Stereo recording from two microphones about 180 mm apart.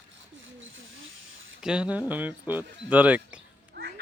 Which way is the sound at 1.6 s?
5° right (ahead or behind).